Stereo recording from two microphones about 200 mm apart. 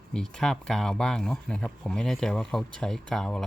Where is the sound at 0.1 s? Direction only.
5° left (ahead or behind).